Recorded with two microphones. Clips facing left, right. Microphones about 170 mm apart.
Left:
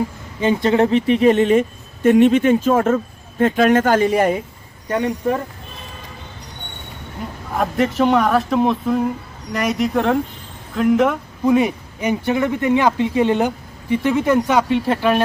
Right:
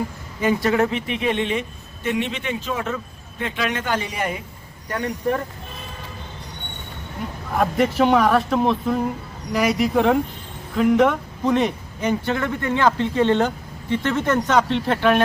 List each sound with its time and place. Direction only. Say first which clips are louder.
0.4 s speech: left 3 dB; 25° left (ahead or behind); by 4.4 s 45° left (ahead or behind)
4.9 s speech: left 6 dB; 20° left (ahead or behind)
7.6 s speech: left 1 dB; centre (ahead or behind)